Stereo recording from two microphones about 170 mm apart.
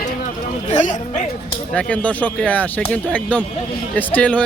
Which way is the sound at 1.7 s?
5° left (ahead or behind).